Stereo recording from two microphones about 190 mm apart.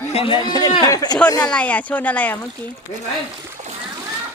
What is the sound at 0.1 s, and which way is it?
A man's voice, 30° left (ahead or behind).